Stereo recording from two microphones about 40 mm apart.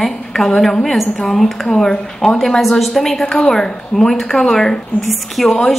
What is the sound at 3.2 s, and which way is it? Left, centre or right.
Speech, left.